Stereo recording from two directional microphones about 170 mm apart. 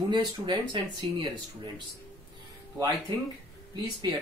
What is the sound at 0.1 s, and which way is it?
Speech, 30° right (ahead or behind).